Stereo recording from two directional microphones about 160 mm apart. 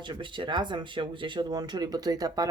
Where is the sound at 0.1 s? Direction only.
30° right (ahead or behind).